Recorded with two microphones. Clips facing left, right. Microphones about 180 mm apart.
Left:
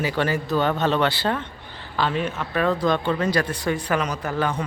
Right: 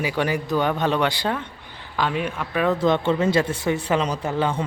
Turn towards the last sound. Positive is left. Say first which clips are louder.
# right 1 dB
turn(degrees=-25)  # may be behind; listen again after turning